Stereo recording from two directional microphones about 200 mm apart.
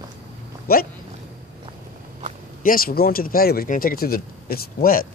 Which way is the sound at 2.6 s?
45° left (ahead or behind).